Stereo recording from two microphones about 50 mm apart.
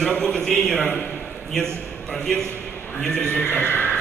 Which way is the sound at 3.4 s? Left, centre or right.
Left.